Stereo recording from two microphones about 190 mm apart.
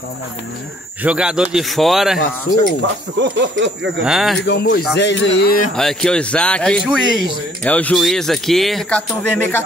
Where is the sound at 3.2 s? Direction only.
70° right (ahead or behind).